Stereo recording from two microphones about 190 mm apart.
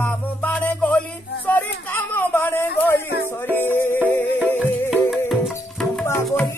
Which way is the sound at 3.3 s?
10° left (ahead or behind).